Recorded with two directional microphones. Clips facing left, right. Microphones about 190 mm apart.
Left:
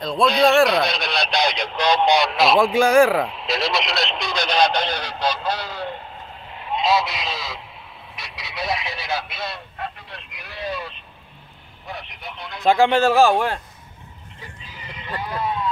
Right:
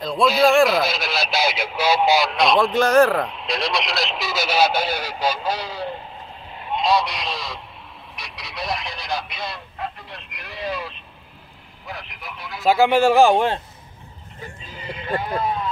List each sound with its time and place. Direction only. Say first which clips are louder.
0.0 s speech: even; centre (ahead or behind)
6.7 s a sound: even; centre (ahead or behind)
11.9 s speech: left 1 dB; centre (ahead or behind); by 13.6 s 20° right (ahead or behind)
14.7 s sheep: right 7 dB; 50° right (ahead or behind)
15.2 s speech: left 3 dB; 30° right (ahead or behind)